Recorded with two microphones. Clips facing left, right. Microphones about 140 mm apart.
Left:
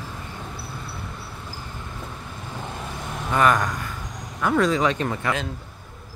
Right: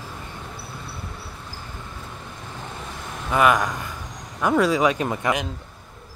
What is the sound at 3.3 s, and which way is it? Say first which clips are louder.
Speech: right 1 dB; 10° right (ahead or behind).